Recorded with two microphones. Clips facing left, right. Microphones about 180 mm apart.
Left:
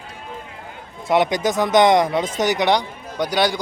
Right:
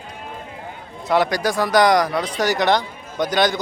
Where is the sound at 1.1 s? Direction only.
20° left (ahead or behind).